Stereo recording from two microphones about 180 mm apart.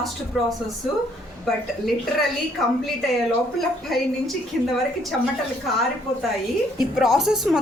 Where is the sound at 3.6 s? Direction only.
Centre (ahead or behind).